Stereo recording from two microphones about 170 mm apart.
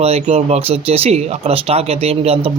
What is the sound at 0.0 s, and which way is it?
Speech, 35° right (ahead or behind).